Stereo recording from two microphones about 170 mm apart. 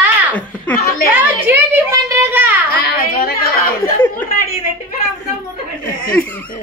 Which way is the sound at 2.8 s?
65° left (ahead or behind).